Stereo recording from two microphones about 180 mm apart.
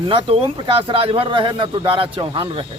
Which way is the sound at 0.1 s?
30° right (ahead or behind).